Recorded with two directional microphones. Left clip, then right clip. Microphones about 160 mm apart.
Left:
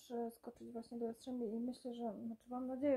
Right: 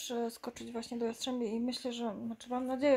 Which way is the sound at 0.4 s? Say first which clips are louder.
Right 9 dB; 10° right (ahead or behind).